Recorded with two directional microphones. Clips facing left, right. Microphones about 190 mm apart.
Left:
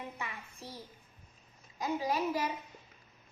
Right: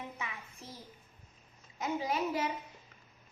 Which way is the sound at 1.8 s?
25° right (ahead or behind).